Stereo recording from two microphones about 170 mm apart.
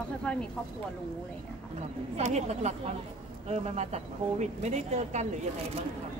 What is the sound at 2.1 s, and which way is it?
Speech, 40° right (ahead or behind).